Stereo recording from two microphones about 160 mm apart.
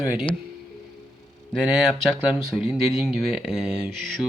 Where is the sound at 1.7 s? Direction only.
Centre (ahead or behind).